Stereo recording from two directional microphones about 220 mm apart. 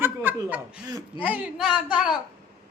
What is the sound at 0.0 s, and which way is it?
Chuckle, 10° right (ahead or behind).